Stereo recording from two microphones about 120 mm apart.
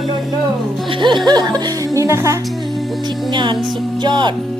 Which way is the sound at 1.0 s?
40° right (ahead or behind).